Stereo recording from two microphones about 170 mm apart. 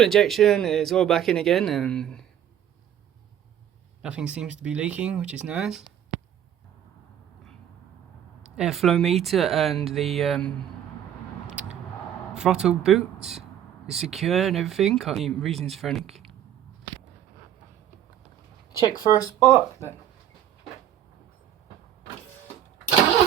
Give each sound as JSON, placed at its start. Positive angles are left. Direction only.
{"t": 0.0, "sound": "speech", "side_deg": 0}
{"t": 4.0, "sound": "speech", "side_deg": -5}
{"t": 8.5, "sound": "speech", "side_deg": 0}
{"t": 11.4, "sound": "vehicle", "side_deg": -10}
{"t": 12.3, "sound": "speech", "side_deg": -5}
{"t": 18.9, "sound": "speech", "side_deg": 20}